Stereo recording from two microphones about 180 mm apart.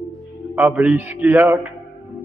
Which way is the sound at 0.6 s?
10° right (ahead or behind).